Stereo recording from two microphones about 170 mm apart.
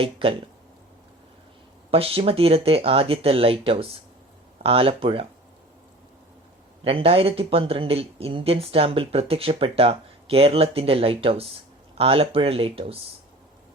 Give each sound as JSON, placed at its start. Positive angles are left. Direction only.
{"t": 0.0, "sound": "speech", "side_deg": -30}
{"t": 1.9, "sound": "speech", "side_deg": -35}
{"t": 6.8, "sound": "speech", "side_deg": -35}